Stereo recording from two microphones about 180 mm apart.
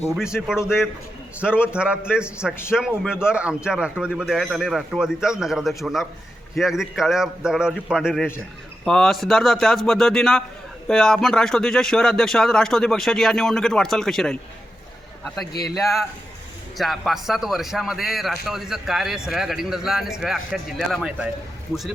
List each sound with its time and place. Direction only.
0.4 s speech: 5° right (ahead or behind)
15.7 s speech: centre (ahead or behind)